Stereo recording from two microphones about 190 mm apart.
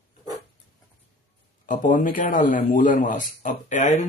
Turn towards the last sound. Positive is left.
turn(degrees=40)  # may be behind; listen again after turning